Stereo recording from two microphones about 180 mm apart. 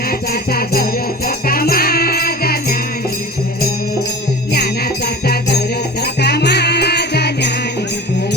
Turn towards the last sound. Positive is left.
turn(degrees=65)  # may be behind; listen again after turning